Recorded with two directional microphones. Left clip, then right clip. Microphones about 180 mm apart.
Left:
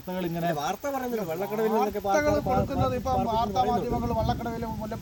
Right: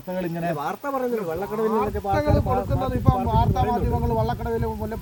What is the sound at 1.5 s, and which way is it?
Speech, 35° left (ahead or behind).